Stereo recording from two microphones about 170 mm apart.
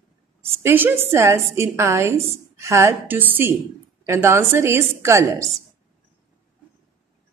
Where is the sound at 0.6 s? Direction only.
15° right (ahead or behind).